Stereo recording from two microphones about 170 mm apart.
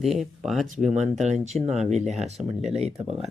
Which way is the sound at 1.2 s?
45° right (ahead or behind).